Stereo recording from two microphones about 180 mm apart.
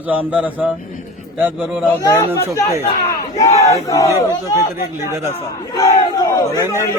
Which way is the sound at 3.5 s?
15° left (ahead or behind).